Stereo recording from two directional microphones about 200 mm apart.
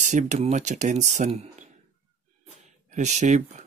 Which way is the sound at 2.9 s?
35° right (ahead or behind).